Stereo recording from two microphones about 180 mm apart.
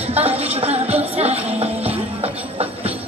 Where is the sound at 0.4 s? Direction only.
35° right (ahead or behind).